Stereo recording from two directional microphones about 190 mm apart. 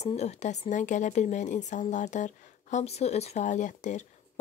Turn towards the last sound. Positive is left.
turn(degrees=40)  # may be behind; listen again after turning